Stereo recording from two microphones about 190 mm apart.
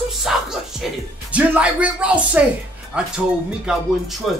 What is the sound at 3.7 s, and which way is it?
Speech, 5° right (ahead or behind).